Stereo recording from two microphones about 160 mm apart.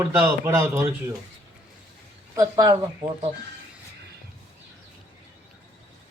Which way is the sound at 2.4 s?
20° right (ahead or behind).